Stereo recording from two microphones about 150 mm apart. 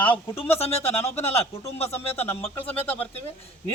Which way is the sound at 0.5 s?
45° left (ahead or behind).